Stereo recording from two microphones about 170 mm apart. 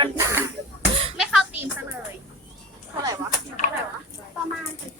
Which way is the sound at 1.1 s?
Centre (ahead or behind).